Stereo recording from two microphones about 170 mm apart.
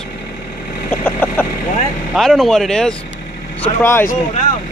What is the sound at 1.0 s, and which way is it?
Vehicle, 10° left (ahead or behind).